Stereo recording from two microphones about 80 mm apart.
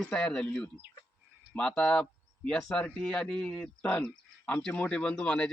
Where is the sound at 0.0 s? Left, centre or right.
Centre.